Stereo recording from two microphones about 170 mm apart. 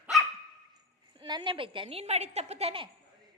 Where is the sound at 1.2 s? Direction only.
25° right (ahead or behind).